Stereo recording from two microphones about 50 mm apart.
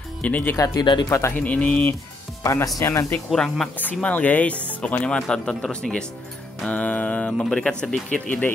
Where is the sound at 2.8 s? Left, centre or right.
Left.